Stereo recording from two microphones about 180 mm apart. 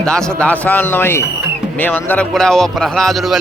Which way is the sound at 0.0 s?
5° left (ahead or behind).